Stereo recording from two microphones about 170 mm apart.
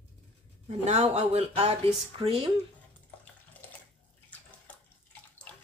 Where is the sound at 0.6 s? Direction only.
40° right (ahead or behind).